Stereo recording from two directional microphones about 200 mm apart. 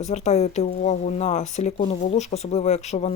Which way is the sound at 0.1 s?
35° left (ahead or behind).